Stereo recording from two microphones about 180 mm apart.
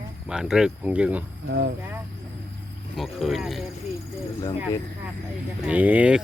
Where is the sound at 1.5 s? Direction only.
70° right (ahead or behind).